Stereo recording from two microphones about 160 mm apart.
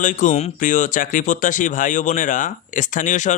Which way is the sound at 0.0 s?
50° left (ahead or behind).